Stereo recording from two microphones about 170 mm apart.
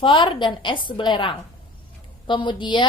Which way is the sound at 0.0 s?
30° left (ahead or behind).